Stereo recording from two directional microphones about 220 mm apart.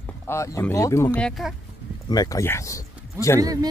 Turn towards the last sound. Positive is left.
turn(degrees=15)  # may be behind; listen again after turning